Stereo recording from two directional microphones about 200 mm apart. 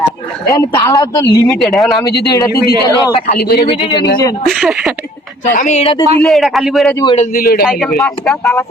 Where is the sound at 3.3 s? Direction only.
50° left (ahead or behind).